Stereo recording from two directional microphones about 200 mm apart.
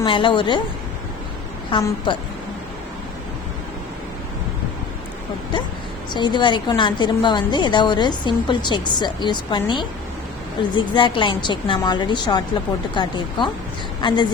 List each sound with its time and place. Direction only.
0.0 s a woman's voice: 25° left (ahead or behind)
1.7 s a woman's voice: 25° left (ahead or behind)
6.1 s a woman's voice: 20° left (ahead or behind)